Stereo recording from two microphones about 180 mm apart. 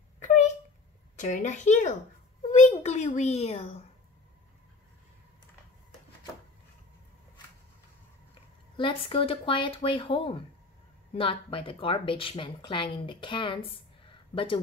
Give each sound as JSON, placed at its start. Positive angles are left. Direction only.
{"t": 1.1, "sound": "a child's voice", "side_deg": 45}
{"t": 8.7, "sound": "a woman's voice", "side_deg": 30}